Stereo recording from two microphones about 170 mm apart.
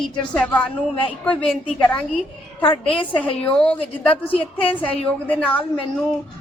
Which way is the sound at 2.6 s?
30° left (ahead or behind).